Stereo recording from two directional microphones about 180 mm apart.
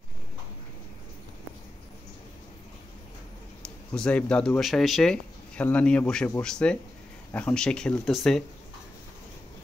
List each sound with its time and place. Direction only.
3.6 s speech: 5° left (ahead or behind)